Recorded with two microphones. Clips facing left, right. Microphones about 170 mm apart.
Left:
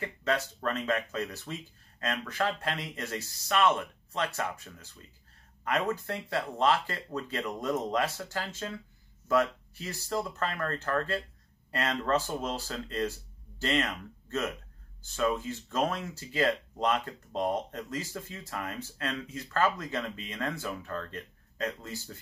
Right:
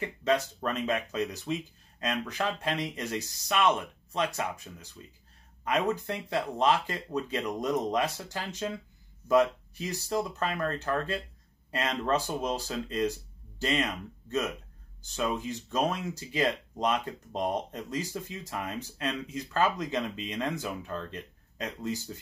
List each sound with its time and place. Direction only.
0.0 s speech: 15° right (ahead or behind)